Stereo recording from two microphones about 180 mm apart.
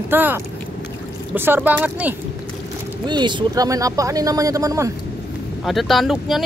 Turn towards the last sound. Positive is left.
turn(degrees=0)  # may be behind; listen again after turning